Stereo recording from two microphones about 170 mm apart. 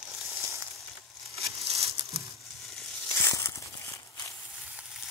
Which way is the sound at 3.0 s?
15° left (ahead or behind).